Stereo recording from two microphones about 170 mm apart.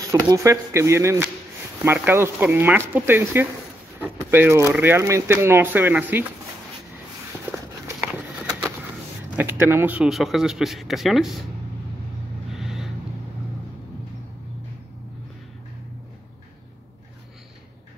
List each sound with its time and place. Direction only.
0.1 s speech: 20° right (ahead or behind)
9.4 s speech: 15° right (ahead or behind)
12.5 s vehicle: centre (ahead or behind)